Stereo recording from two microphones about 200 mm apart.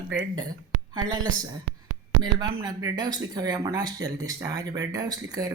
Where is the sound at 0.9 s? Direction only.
20° right (ahead or behind).